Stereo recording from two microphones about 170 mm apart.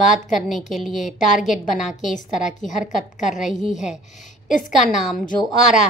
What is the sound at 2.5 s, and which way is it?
Speech, 45° left (ahead or behind).